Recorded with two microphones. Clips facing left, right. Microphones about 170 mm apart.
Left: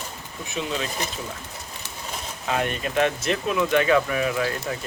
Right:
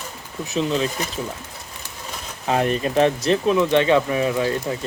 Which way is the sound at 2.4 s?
35° right (ahead or behind).